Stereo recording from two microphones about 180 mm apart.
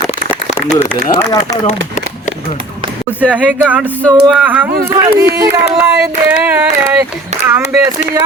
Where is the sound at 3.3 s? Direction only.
10° right (ahead or behind).